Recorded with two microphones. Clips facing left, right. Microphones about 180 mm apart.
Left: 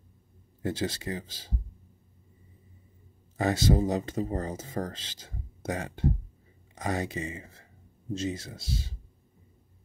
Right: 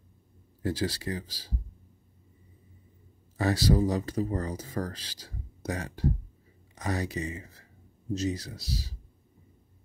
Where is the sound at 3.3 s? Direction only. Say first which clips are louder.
Even; 20° left (ahead or behind).